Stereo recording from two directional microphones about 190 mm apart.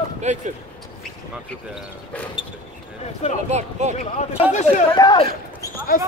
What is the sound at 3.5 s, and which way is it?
Speech, 35° right (ahead or behind).